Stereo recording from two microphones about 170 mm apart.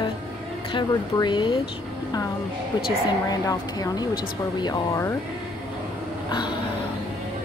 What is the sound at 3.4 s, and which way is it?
A woman's voice, 20° left (ahead or behind).